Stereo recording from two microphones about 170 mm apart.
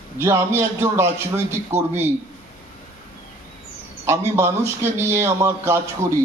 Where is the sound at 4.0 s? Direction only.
15° right (ahead or behind).